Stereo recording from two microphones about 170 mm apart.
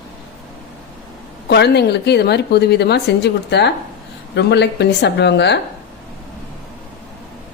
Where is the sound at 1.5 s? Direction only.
80° left.